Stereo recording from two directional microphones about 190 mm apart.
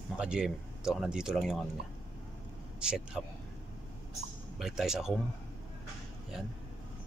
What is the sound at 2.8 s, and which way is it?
Speech, 5° right (ahead or behind).